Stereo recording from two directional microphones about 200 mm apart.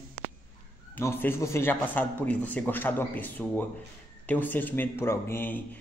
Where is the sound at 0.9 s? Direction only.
10° left (ahead or behind).